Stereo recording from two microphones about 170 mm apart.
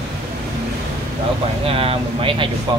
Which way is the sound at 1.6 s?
35° right (ahead or behind).